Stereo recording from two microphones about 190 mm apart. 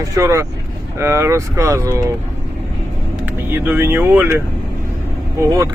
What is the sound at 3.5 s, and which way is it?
Speech, 10° right (ahead or behind).